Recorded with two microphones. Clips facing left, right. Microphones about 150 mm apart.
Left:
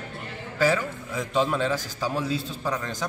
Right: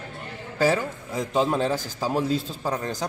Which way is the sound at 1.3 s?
40° right (ahead or behind).